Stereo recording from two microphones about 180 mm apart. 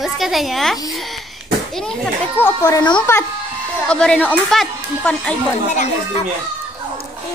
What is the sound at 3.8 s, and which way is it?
Speech, 5° left (ahead or behind).